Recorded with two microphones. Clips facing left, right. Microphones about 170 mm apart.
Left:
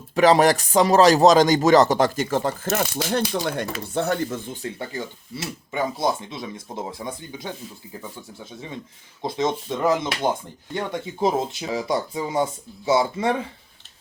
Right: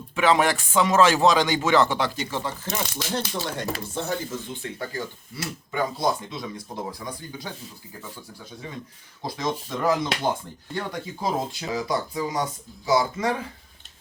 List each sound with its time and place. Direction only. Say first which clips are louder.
0.1 s speech: left 5 dB; 40° left (ahead or behind); by 4.4 s 65° left (ahead or behind)
4.6 s speech: left 3 dB; 30° left (ahead or behind)
9.2 s speech: left 5 dB; 25° left (ahead or behind)